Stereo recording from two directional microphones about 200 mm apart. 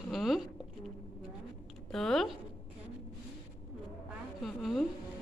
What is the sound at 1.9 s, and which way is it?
Speech, centre (ahead or behind).